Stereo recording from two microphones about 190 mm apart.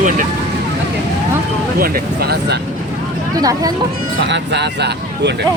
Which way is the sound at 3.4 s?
20° right (ahead or behind).